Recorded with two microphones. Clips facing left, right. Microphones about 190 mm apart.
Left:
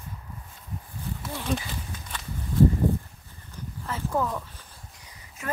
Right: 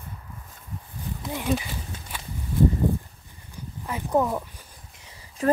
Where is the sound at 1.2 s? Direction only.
15° right (ahead or behind).